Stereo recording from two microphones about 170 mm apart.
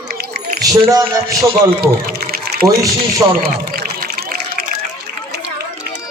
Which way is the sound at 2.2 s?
65° right (ahead or behind).